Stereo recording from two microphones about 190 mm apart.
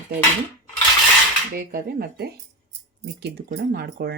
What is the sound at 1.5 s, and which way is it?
Speech, 50° right (ahead or behind).